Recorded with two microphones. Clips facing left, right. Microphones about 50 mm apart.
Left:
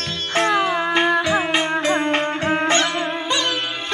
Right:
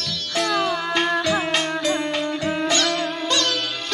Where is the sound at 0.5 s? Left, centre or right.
Left.